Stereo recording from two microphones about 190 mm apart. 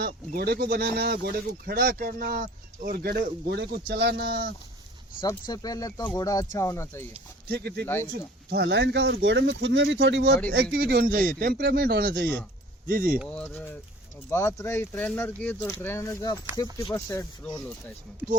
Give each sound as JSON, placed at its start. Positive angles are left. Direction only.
{"t": 0.0, "sound": "speech", "side_deg": -55}
{"t": 5.2, "sound": "speech", "side_deg": 20}
{"t": 7.4, "sound": "speech", "side_deg": -55}
{"t": 13.1, "sound": "speech", "side_deg": 5}